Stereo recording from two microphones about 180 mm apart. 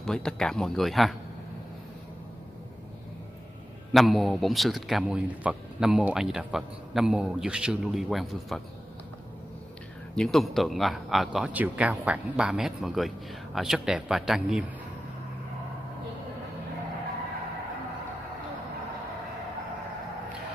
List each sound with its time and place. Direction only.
0.0 s a man's voice: 5° left (ahead or behind)
3.9 s a man's voice: centre (ahead or behind)
10.1 s a man's voice: centre (ahead or behind)